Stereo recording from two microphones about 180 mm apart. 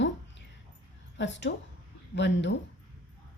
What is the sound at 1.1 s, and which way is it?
A woman's voice, 85° left.